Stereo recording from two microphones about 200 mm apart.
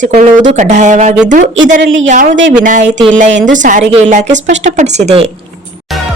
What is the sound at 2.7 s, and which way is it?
Speech, 40° right (ahead or behind).